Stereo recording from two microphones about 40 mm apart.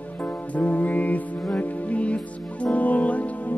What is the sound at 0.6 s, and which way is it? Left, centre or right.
Music, left.